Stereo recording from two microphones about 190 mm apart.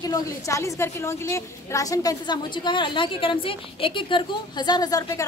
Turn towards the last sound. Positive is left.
turn(degrees=20)  # may be behind; listen again after turning